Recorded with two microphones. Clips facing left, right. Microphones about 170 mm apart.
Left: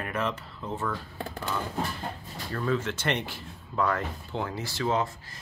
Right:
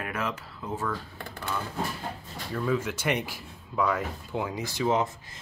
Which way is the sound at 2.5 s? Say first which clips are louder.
Right 1 dB; 10° right (ahead or behind).